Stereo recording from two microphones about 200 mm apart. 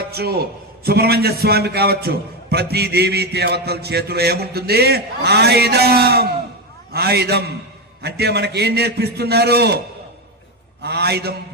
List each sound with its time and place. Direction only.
0.1 s a man's voice: 50° right (ahead or behind)
10.8 s a man's voice: 55° right (ahead or behind)